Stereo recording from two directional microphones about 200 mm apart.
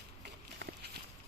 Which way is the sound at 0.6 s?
55° right (ahead or behind).